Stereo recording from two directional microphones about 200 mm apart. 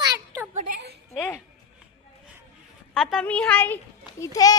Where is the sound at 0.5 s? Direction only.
35° right (ahead or behind).